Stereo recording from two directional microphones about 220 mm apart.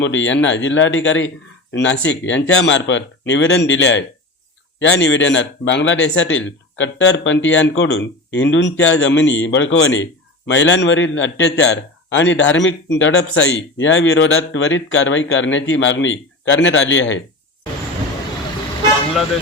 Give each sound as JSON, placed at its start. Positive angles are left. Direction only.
{"t": 0.0, "sound": "a man's voice", "side_deg": 55}